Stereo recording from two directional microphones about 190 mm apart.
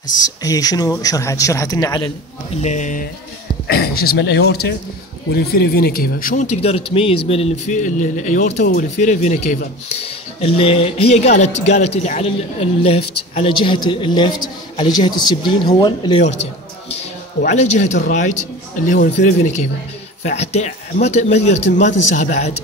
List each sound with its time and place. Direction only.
0.4 s a woman's voice: 20° left (ahead or behind)
2.5 s speech: 40° left (ahead or behind)
3.6 s a woman's voice: 55° left (ahead or behind); by 16.2 s 25° left (ahead or behind)
17.4 s speech: 40° left (ahead or behind)